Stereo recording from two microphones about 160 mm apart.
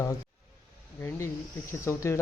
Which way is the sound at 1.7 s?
15° left (ahead or behind).